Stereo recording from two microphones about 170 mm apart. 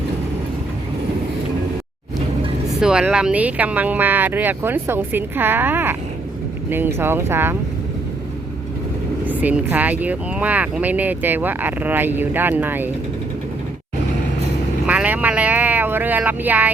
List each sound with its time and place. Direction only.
2.8 s speech: 5° right (ahead or behind)
9.2 s speech: 10° right (ahead or behind)
14.8 s vehicle: 10° right (ahead or behind)